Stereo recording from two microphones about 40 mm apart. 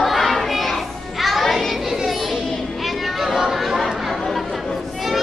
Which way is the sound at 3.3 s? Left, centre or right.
Centre.